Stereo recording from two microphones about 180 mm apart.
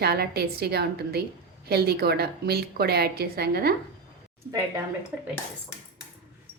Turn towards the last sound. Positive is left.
turn(degrees=-5)  # may be behind; listen again after turning